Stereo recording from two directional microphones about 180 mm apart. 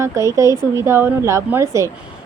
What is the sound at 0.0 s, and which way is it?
A woman's voice, 15° right (ahead or behind).